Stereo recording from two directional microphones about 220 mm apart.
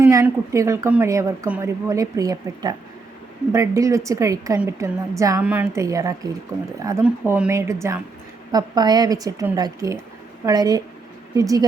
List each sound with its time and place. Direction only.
0.0 s a woman's voice: 15° right (ahead or behind)